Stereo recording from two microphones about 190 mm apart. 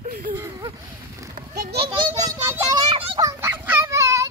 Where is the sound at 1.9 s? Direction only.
20° right (ahead or behind).